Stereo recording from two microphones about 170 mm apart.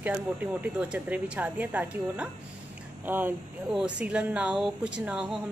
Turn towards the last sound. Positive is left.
turn(degrees=-5)  # may be behind; listen again after turning